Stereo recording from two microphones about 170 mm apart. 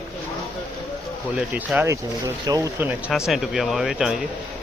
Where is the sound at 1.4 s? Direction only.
5° right (ahead or behind).